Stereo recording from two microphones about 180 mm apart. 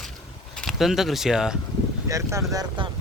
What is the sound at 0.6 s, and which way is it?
Speech, centre (ahead or behind).